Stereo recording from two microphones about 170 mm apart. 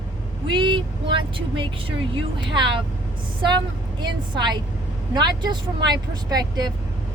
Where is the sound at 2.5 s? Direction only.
30° right (ahead or behind).